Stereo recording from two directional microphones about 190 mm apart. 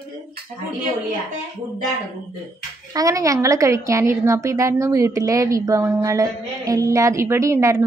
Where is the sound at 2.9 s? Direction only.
20° right (ahead or behind).